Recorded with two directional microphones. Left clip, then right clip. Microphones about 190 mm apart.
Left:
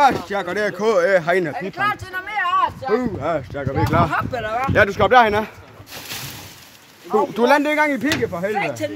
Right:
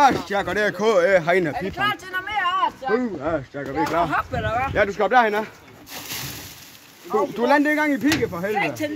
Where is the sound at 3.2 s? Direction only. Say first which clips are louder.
Left 3 dB; 55° left (ahead or behind).